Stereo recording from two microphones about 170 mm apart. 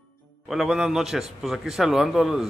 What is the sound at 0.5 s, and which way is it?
A man's voice, centre (ahead or behind).